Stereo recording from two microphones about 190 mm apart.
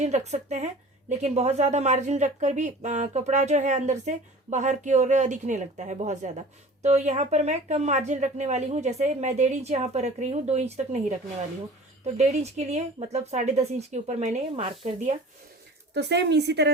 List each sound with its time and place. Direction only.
0.0 s speech: 35° right (ahead or behind)
12.1 s speech: 35° right (ahead or behind)
16.0 s a woman's voice: 65° right (ahead or behind)